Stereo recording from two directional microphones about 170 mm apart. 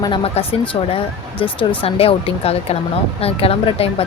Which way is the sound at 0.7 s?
30° left (ahead or behind).